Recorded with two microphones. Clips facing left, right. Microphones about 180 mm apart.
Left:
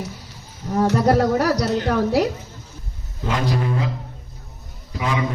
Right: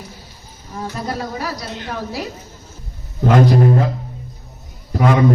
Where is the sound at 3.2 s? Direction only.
50° right (ahead or behind).